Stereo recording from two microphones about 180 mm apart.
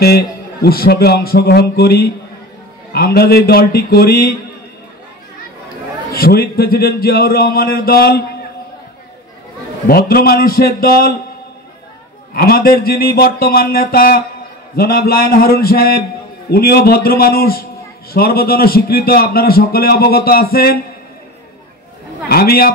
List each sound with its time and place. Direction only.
0.7 s a man's voice: 55° left (ahead or behind)
6.1 s a man's voice: 55° left (ahead or behind)
9.8 s a man's voice: 55° left (ahead or behind)
12.4 s a man's voice: 60° left (ahead or behind)
22.3 s a man's voice: 60° left (ahead or behind)